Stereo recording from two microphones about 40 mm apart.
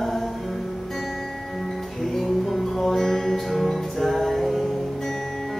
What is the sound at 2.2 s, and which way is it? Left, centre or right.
Music, centre.